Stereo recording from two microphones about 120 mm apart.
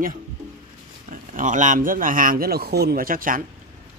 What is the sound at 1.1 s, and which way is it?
Speech, 90° right.